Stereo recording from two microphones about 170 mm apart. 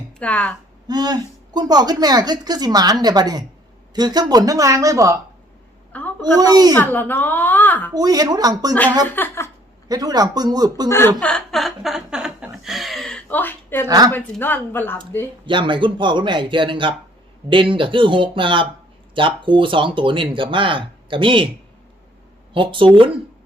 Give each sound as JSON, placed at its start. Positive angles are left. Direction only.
{"t": 0.2, "sound": "speech", "side_deg": 5}
{"t": 0.9, "sound": "a woman's voice", "side_deg": -25}
{"t": 5.9, "sound": "a sound", "side_deg": 10}
{"t": 6.3, "sound": "a woman's voice", "side_deg": -20}
{"t": 6.7, "sound": "speech", "side_deg": 10}
{"t": 7.9, "sound": "a woman's voice", "side_deg": -20}
{"t": 9.0, "sound": "speech", "side_deg": 10}
{"t": 9.9, "sound": "a woman's voice", "side_deg": -20}
{"t": 10.8, "sound": "speech", "side_deg": 15}
{"t": 13.8, "sound": "a woman's voice", "side_deg": -20}
{"t": 14.1, "sound": "speech", "side_deg": 10}
{"t": 15.4, "sound": "a woman's voice", "side_deg": -30}
{"t": 22.5, "sound": "a woman's voice", "side_deg": -30}